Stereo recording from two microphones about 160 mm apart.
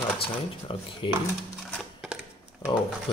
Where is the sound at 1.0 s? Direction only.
30° left (ahead or behind).